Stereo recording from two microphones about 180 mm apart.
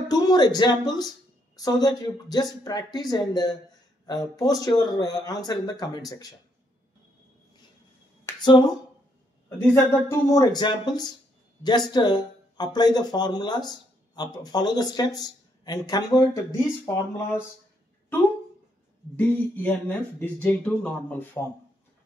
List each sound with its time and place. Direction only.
0.1 s speech: 20° left (ahead or behind)
8.3 s speech: 25° left (ahead or behind)
19.1 s speech: 10° left (ahead or behind)